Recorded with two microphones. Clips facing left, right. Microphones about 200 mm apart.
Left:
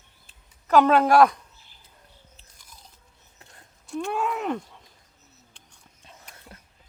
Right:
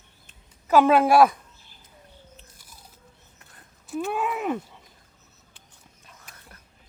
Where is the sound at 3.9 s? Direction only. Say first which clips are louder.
Even; 5° right (ahead or behind).